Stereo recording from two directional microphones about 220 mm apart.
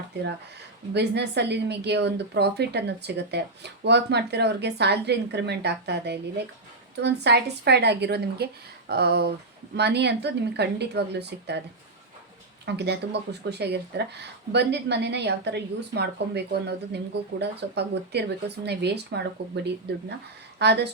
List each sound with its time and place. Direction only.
0.9 s speech: 50° right (ahead or behind)
12.6 s speech: 50° right (ahead or behind)